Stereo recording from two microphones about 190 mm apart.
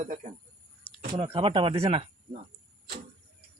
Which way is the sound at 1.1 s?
30° right (ahead or behind).